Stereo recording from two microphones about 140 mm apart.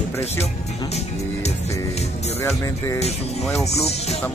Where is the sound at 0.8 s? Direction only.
50° left (ahead or behind).